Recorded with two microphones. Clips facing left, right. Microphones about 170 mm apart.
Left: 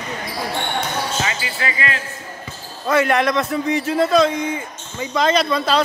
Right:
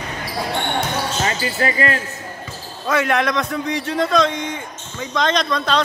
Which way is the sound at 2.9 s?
Centre (ahead or behind).